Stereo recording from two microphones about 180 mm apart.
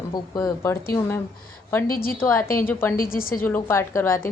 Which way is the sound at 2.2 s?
15° left (ahead or behind).